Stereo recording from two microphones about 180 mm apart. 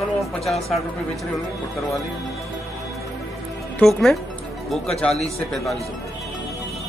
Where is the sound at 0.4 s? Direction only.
Centre (ahead or behind).